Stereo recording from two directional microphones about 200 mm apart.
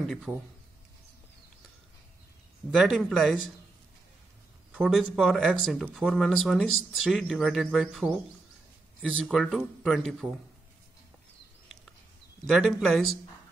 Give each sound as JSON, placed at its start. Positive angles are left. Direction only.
{"t": 0.3, "sound": "speech", "side_deg": -15}
{"t": 2.7, "sound": "speech", "side_deg": 0}
{"t": 4.7, "sound": "speech", "side_deg": 0}
{"t": 9.2, "sound": "speech", "side_deg": 0}
{"t": 12.4, "sound": "speech", "side_deg": 0}